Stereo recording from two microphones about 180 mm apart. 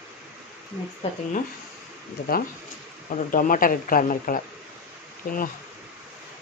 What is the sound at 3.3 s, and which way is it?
Speech, 50° left (ahead or behind).